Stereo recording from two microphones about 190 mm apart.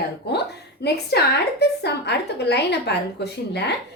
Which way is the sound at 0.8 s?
60° left (ahead or behind).